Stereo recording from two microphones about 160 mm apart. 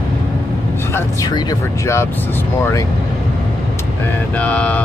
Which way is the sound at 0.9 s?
20° left (ahead or behind).